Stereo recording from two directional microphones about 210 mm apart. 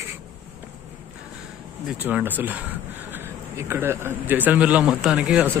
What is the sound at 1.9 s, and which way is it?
Speech, 10° right (ahead or behind).